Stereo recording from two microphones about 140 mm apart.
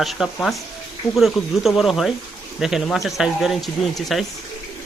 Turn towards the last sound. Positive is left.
turn(degrees=0)  # may be behind; listen again after turning